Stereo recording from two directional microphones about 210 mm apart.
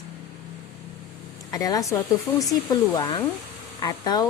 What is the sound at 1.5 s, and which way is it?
A woman's voice, 15° left (ahead or behind).